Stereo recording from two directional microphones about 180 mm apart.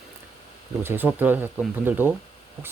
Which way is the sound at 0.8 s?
10° right (ahead or behind).